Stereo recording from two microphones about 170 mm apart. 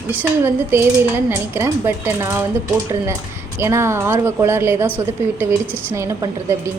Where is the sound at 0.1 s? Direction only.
10° right (ahead or behind).